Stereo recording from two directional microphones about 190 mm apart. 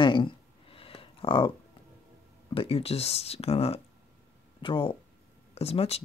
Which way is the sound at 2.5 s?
30° left (ahead or behind).